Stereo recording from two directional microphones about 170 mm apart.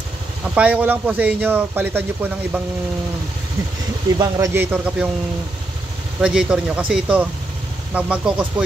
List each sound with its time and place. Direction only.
0.6 s speech: 10° right (ahead or behind)
4.2 s a man's voice: 20° right (ahead or behind)
4.6 s speech: 5° right (ahead or behind)
6.2 s speech: 5° right (ahead or behind)